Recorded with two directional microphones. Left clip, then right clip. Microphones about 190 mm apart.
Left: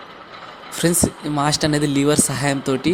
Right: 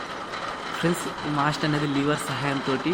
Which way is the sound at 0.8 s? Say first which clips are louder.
Left 8 dB; 40° left (ahead or behind).